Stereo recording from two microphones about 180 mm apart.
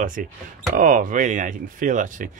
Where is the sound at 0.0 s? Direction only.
50° right (ahead or behind).